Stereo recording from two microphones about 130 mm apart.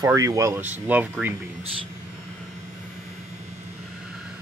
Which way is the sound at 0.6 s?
10° right (ahead or behind).